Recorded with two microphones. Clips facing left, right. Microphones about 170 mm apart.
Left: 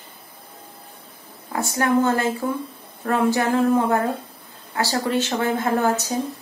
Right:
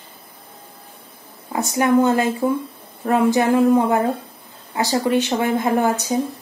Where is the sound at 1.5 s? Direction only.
15° right (ahead or behind).